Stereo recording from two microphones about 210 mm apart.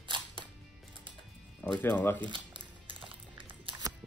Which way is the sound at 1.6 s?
5° left (ahead or behind).